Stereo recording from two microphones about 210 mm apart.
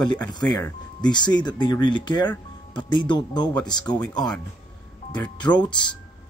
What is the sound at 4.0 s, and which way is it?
Speech, 5° left (ahead or behind).